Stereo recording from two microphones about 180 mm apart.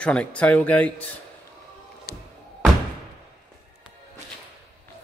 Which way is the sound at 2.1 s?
60° left (ahead or behind).